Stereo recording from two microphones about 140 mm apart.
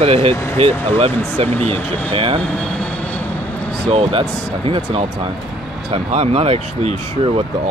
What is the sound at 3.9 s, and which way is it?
Speech, 45° right (ahead or behind).